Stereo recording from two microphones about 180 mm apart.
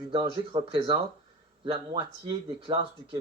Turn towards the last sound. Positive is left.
turn(degrees=-25)  # may be behind; listen again after turning